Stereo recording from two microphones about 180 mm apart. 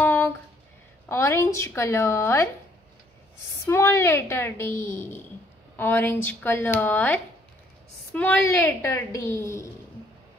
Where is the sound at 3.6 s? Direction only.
15° left (ahead or behind).